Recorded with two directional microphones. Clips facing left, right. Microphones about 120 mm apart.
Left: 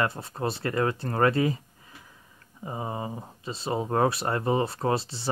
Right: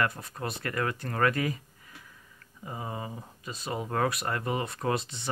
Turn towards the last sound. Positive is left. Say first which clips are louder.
# left 3 dB
turn(degrees=30)  # may be behind; listen again after turning